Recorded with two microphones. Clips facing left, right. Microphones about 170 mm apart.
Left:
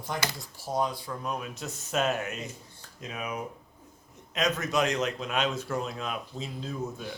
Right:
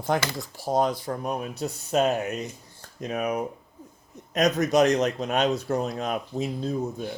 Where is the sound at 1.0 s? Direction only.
45° right (ahead or behind).